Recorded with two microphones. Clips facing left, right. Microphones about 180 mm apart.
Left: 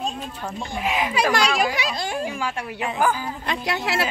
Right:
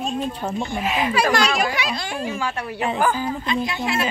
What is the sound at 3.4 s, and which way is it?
Speech, 70° left (ahead or behind).